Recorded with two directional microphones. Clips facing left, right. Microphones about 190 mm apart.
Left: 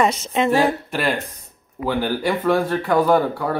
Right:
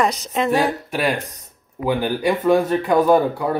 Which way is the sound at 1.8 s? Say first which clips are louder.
Right 2 dB; 15° right (ahead or behind).